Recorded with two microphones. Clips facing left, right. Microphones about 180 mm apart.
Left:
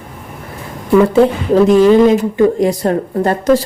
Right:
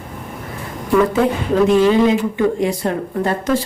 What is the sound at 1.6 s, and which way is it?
Speech, 40° left (ahead or behind).